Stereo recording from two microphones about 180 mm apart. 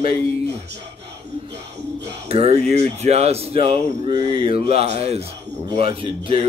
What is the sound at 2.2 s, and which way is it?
Speech, 35° right (ahead or behind).